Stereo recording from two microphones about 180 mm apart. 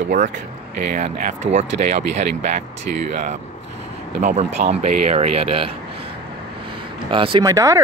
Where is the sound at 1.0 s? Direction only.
45° right (ahead or behind).